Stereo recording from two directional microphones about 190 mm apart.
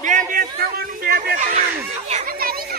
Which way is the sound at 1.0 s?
50° right (ahead or behind).